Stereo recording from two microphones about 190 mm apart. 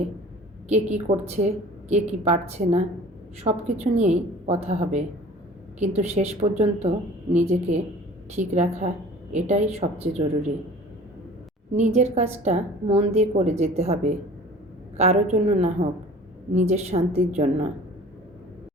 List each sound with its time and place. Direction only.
0.7 s a woman's voice: 35° right (ahead or behind)
11.7 s a woman's voice: 35° right (ahead or behind)